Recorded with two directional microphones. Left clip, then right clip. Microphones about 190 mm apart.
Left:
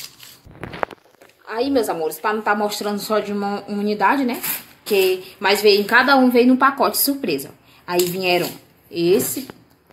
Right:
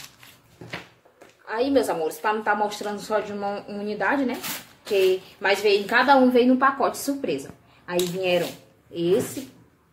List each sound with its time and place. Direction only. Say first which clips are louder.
1.4 s a woman's voice: left 2 dB; 45° left (ahead or behind)